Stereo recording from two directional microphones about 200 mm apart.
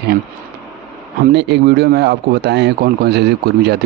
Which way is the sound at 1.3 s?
60° right (ahead or behind).